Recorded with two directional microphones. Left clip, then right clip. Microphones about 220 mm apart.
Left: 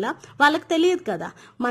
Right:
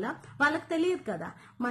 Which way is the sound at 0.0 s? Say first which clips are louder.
Left 9 dB; 45° left (ahead or behind).